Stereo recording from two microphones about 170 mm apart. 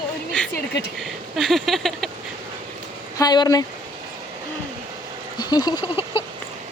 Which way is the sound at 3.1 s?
25° left (ahead or behind).